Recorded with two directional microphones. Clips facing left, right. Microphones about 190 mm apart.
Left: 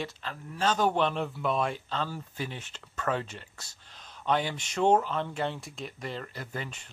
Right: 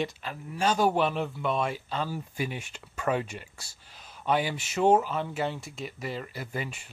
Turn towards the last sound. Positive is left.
turn(degrees=-10)  # may be behind; listen again after turning